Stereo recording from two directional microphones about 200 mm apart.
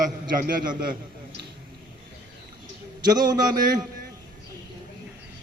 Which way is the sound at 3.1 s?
20° right (ahead or behind).